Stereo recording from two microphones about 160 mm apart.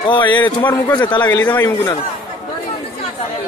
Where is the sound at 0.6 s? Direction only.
10° left (ahead or behind).